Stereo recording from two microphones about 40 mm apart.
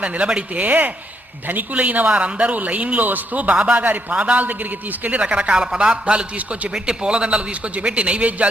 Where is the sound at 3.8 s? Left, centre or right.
Right.